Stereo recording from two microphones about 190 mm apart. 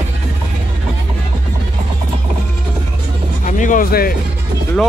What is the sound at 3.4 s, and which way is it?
Music, 45° left (ahead or behind).